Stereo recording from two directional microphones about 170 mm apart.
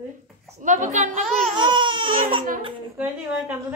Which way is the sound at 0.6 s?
45° right (ahead or behind).